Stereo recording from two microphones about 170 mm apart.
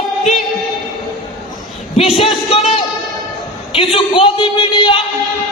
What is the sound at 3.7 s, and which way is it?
A man's voice, 35° left (ahead or behind).